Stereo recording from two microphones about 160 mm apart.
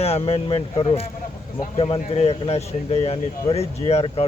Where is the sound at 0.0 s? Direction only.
40° left (ahead or behind).